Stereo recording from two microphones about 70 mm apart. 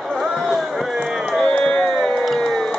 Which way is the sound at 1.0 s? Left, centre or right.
Centre.